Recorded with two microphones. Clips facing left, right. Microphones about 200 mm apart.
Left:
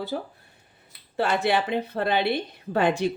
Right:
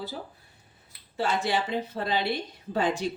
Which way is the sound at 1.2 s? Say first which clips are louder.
Left 4 dB; 60° left (ahead or behind).